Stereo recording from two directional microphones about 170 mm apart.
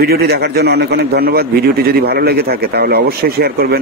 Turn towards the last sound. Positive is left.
turn(degrees=-65)  # may be behind; listen again after turning